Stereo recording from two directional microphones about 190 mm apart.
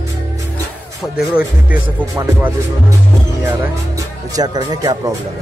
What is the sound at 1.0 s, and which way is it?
Speech, 5° right (ahead or behind).